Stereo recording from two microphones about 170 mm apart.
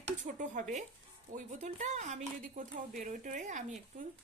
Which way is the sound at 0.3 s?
50° right (ahead or behind).